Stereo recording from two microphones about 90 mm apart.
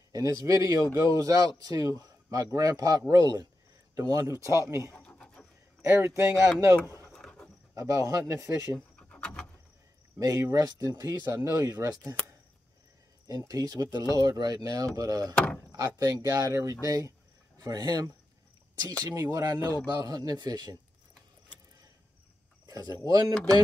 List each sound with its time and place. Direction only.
0.1 s speech: 40° right (ahead or behind)
4.9 s pant: 10° left (ahead or behind)
5.9 s speech: 25° right (ahead or behind)
7.2 s dog: 5° left (ahead or behind)
7.7 s speech: 35° right (ahead or behind)
8.7 s a sound: 10° left (ahead or behind)
10.1 s speech: 35° right (ahead or behind)
13.3 s speech: 40° right (ahead or behind)
15.3 s door: 15° left (ahead or behind)
16.0 s speech: 45° right (ahead or behind)
19.0 s speech: 30° right (ahead or behind)
19.4 s speech: 45° right (ahead or behind)
22.7 s speech: 45° right (ahead or behind)